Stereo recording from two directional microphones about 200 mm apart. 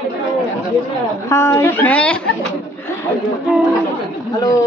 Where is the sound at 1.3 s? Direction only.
10° left (ahead or behind).